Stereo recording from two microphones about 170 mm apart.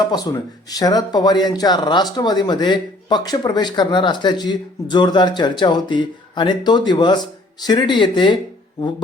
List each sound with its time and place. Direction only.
0.1 s speech: 20° left (ahead or behind)